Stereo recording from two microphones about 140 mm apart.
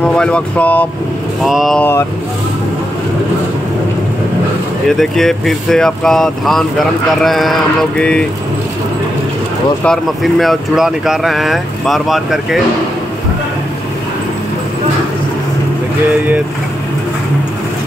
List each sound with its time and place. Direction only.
0.0 s speech: 5° left (ahead or behind)
1.4 s speech: centre (ahead or behind)
1.8 s speech: 15° left (ahead or behind)
4.9 s speech: 5° left (ahead or behind)
9.8 s speech: centre (ahead or behind)